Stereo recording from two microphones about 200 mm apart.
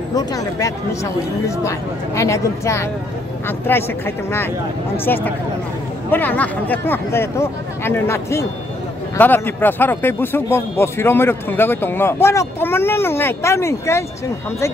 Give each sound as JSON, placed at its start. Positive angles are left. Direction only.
{"t": 0.1, "sound": "speech", "side_deg": 20}